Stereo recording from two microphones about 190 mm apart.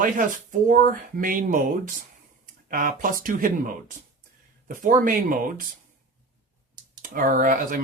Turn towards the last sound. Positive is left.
turn(degrees=-45)  # may be behind; listen again after turning